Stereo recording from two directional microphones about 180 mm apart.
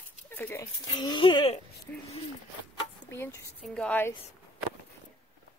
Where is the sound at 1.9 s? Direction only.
10° left (ahead or behind).